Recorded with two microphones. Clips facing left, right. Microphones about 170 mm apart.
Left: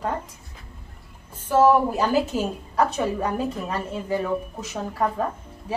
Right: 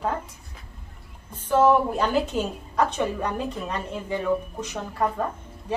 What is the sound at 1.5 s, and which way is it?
A woman's voice, 5° left (ahead or behind).